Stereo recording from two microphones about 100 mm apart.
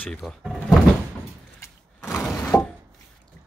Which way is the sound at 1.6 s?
25° left (ahead or behind).